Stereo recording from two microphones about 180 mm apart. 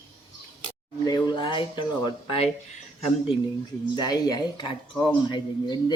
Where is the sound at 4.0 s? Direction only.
20° left (ahead or behind).